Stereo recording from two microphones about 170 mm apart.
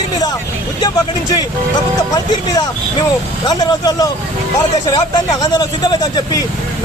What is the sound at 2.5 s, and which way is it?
Speech, 20° left (ahead or behind).